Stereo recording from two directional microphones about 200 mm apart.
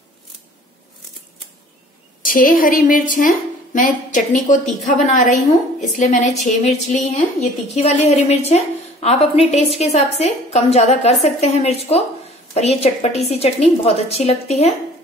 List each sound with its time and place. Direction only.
2.2 s a woman's voice: 45° left (ahead or behind)